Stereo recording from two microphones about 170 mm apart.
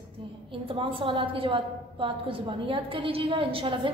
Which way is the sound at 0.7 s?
30° right (ahead or behind).